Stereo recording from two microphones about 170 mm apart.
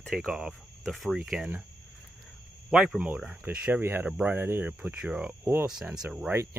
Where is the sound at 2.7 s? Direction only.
5° right (ahead or behind).